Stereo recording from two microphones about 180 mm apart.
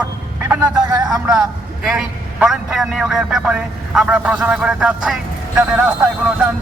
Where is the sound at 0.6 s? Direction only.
20° right (ahead or behind).